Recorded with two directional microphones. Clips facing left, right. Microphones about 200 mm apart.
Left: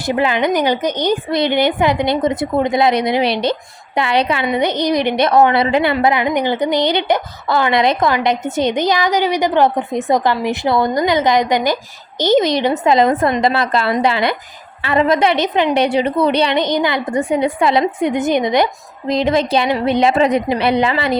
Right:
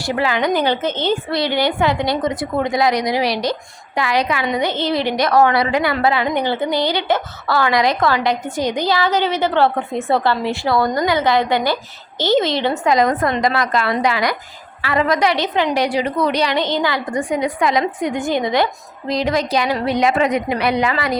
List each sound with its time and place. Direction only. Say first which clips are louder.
0.0 s a woman's voice: left 3 dB; 20° left (ahead or behind)